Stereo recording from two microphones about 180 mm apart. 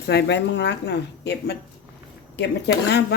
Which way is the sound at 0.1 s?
70° left (ahead or behind).